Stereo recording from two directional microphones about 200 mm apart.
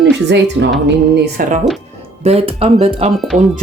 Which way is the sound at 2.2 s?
30° right (ahead or behind).